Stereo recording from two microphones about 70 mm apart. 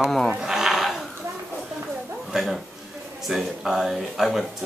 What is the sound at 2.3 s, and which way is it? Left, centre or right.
A man's voice, centre.